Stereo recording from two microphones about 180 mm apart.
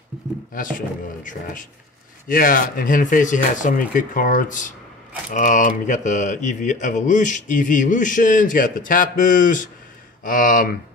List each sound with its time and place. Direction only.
0.5 s speech: 50° left (ahead or behind)